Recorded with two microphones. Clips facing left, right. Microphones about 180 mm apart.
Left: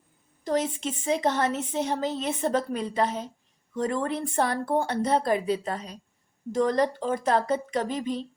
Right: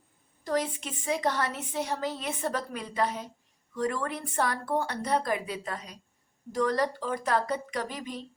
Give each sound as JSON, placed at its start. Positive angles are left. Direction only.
{"t": 0.4, "sound": "a woman's voice", "side_deg": 20}